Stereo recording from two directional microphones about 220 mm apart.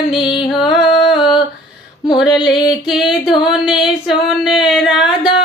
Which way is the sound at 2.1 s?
Centre (ahead or behind).